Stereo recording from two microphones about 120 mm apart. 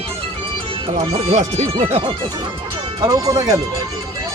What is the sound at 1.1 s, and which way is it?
Speech, 60° right (ahead or behind).